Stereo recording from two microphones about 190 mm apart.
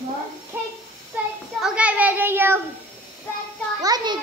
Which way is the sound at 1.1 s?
10° right (ahead or behind).